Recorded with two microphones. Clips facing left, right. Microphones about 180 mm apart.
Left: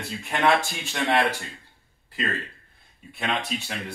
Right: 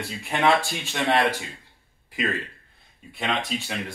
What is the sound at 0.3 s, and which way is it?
Speech, 10° right (ahead or behind).